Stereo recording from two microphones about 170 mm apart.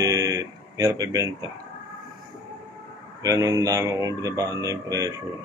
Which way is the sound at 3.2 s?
20° right (ahead or behind).